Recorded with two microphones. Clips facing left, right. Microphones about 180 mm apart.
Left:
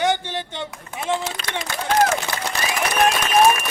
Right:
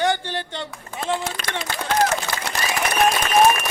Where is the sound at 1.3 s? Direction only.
50° right (ahead or behind).